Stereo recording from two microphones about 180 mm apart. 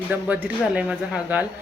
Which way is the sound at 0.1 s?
10° right (ahead or behind).